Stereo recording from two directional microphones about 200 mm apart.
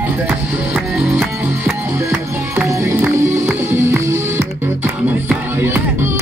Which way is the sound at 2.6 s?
10° right (ahead or behind).